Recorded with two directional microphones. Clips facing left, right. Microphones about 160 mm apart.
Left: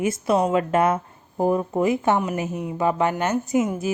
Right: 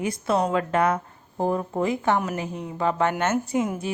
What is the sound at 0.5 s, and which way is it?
A woman's voice, 25° left (ahead or behind).